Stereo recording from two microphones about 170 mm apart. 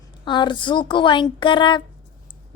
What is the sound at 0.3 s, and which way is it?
Speech, 30° left (ahead or behind).